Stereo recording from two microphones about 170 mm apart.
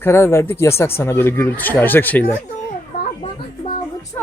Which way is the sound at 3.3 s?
30° left (ahead or behind).